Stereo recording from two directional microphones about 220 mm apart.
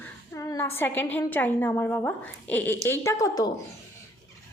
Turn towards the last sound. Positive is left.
turn(degrees=15)  # may be behind; listen again after turning